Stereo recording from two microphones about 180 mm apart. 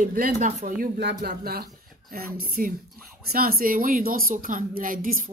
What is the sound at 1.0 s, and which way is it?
Speech, 70° right (ahead or behind).